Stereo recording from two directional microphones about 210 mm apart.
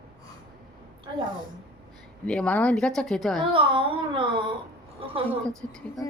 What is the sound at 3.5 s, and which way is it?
Speech, 25° right (ahead or behind).